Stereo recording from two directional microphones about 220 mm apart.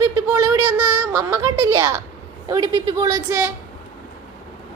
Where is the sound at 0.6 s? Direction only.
90° right.